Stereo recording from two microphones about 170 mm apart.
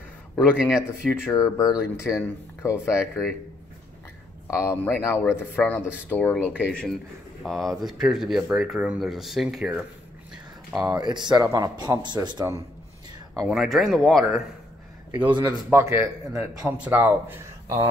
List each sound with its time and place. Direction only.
0.6 s speech: 5° right (ahead or behind)
0.8 s speech: 15° left (ahead or behind)
4.5 s speech: 15° left (ahead or behind); by 9.8 s 5° right (ahead or behind)
10.8 s speech: 25° right (ahead or behind)
13.3 s speech: centre (ahead or behind)
15.4 s a man's voice: 15° right (ahead or behind)